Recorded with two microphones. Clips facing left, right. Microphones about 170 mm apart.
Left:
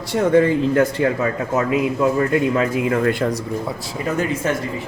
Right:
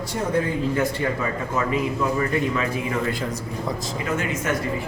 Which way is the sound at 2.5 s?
55° left (ahead or behind).